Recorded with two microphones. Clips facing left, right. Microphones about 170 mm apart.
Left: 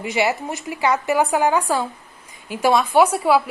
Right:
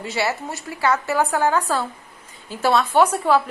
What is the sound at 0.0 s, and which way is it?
A woman's voice, 15° left (ahead or behind).